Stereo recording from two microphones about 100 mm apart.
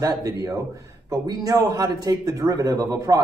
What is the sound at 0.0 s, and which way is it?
A man's voice, 35° right (ahead or behind).